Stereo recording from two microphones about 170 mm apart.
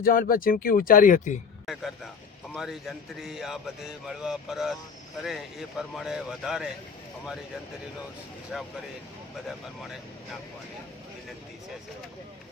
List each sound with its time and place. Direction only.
0.0 s speech: 55° left (ahead or behind)
1.6 s a sound: centre (ahead or behind)
2.6 s speech: centre (ahead or behind)
8.5 s speech: 5° right (ahead or behind)